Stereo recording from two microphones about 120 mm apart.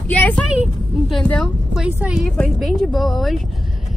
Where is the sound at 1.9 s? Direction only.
10° right (ahead or behind).